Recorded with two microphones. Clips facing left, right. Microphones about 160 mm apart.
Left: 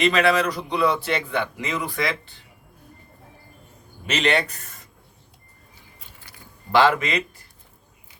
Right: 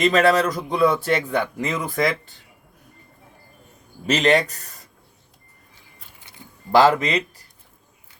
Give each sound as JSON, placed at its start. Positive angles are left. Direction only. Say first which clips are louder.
{"t": 0.0, "sound": "a man's voice", "louder": "right 2 dB", "side_deg": -45}
{"t": 4.0, "sound": "a man's voice", "louder": "right 4 dB", "side_deg": -40}
{"t": 6.1, "sound": "a sound", "louder": "left 1 dB", "side_deg": -20}
{"t": 6.7, "sound": "a man's voice", "louder": "right 3 dB", "side_deg": -40}